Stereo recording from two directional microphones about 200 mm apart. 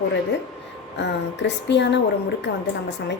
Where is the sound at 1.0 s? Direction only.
60° left (ahead or behind).